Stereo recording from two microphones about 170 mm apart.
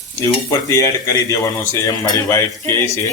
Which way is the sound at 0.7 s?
20° left (ahead or behind).